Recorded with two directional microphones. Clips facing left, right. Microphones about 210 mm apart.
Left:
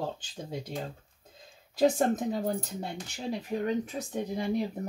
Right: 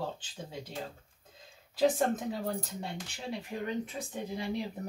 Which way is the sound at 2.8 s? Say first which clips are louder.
Left 3 dB; 40° left (ahead or behind).